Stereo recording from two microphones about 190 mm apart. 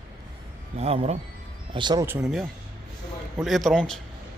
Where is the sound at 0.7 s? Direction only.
35° right (ahead or behind).